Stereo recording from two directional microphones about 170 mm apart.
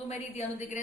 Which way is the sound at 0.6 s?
45° left (ahead or behind).